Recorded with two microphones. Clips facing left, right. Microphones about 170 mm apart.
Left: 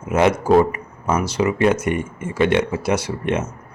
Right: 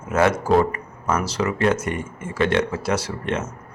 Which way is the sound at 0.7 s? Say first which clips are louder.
Left 2 dB; 15° left (ahead or behind).